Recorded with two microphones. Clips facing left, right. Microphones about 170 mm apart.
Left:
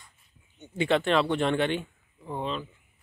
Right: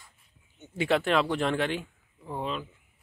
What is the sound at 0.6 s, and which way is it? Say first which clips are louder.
Speech: left 1 dB; 5° right (ahead or behind).